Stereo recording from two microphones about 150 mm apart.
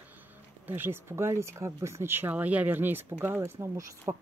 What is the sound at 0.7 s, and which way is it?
Speech, 15° right (ahead or behind).